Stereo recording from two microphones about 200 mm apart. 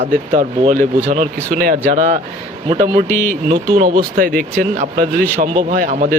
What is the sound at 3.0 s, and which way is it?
Speech, 10° left (ahead or behind).